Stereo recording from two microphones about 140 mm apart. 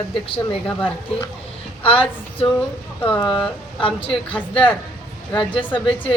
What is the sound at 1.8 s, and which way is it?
Speech, 40° left (ahead or behind).